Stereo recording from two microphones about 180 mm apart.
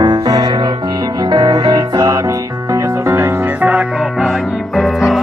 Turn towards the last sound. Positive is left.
turn(degrees=0)  # may be behind; listen again after turning